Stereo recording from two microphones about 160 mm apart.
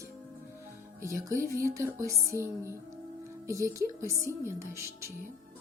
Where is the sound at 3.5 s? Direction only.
20° right (ahead or behind).